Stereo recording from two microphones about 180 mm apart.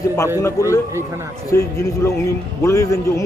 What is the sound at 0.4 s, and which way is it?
Speech, 15° left (ahead or behind).